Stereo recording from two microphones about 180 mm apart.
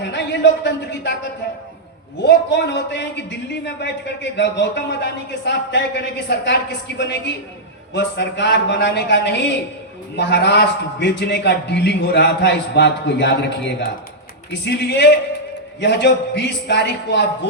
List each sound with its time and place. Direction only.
0.0 s a man's voice: 70° left (ahead or behind)